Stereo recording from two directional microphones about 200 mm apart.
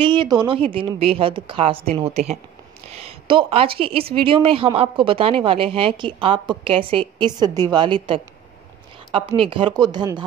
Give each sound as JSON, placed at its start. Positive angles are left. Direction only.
{"t": 0.0, "sound": "a woman's voice", "side_deg": -25}
{"t": 9.5, "sound": "speech", "side_deg": -25}